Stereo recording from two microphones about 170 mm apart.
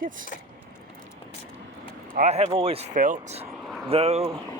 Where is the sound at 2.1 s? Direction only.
45° right (ahead or behind).